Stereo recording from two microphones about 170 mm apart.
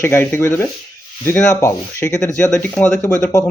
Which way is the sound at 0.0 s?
15° left (ahead or behind).